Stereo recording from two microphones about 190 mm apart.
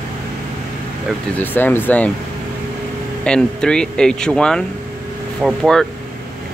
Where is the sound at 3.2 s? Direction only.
5° left (ahead or behind).